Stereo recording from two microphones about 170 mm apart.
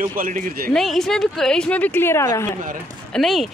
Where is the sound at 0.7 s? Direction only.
Centre (ahead or behind).